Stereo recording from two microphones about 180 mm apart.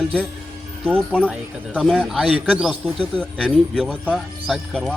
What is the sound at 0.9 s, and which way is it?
Speech, 5° left (ahead or behind).